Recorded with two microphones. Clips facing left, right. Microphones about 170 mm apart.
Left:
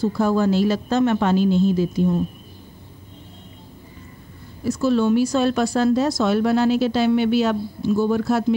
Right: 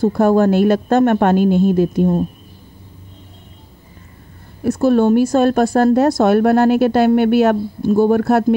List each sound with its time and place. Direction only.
0.0 s a woman's voice: 55° right (ahead or behind)
4.6 s a woman's voice: 55° right (ahead or behind)